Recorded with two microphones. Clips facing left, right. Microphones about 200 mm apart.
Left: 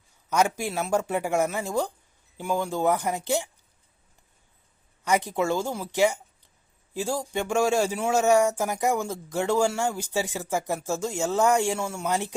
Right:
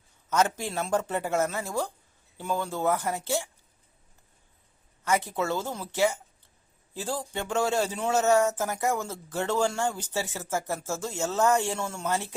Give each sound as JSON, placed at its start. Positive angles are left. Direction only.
{"t": 0.3, "sound": "speech", "side_deg": 10}
{"t": 5.0, "sound": "speech", "side_deg": 15}